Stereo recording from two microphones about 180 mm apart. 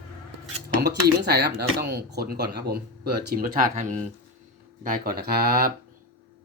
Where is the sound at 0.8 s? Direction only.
65° right (ahead or behind).